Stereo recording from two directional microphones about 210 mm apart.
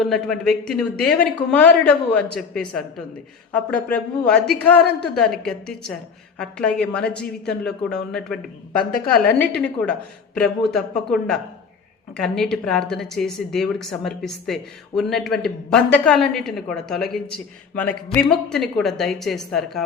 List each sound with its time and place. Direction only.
0.0 s speech: centre (ahead or behind)